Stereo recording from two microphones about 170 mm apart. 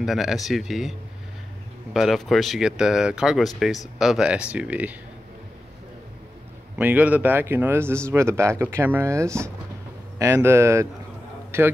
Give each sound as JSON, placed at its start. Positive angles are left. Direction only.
{"t": 0.0, "sound": "speech", "side_deg": 0}
{"t": 2.0, "sound": "speech", "side_deg": 0}
{"t": 6.8, "sound": "a man's voice", "side_deg": -10}